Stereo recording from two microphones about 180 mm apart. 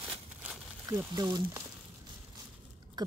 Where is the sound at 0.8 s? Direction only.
20° right (ahead or behind).